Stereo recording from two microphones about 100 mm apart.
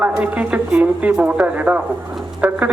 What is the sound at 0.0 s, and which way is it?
Speech, 15° right (ahead or behind).